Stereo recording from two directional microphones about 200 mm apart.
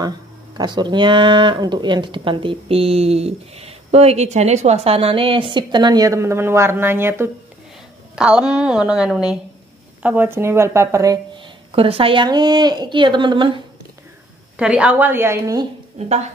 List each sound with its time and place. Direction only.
0.6 s a woman's voice: 20° right (ahead or behind)
11.7 s speech: 25° right (ahead or behind)
14.6 s speech: 5° right (ahead or behind)